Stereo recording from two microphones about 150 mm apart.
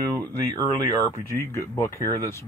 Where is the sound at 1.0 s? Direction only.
15° left (ahead or behind).